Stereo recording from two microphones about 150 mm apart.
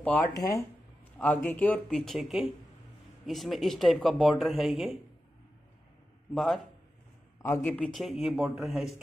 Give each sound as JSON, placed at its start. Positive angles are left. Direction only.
{"t": 0.3, "sound": "speech", "side_deg": 25}
{"t": 1.1, "sound": "speech", "side_deg": 10}
{"t": 6.3, "sound": "speech", "side_deg": 0}
{"t": 7.4, "sound": "speech", "side_deg": 15}